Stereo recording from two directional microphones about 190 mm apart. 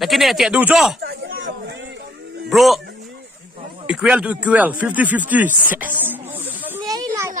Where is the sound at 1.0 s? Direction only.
55° right (ahead or behind).